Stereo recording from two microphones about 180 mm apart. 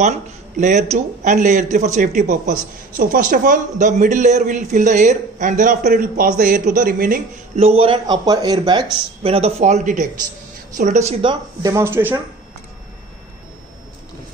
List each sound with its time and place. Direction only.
0.6 s a man's voice: 40° right (ahead or behind)
7.5 s speech: 35° right (ahead or behind)
11.6 s speech: 15° right (ahead or behind)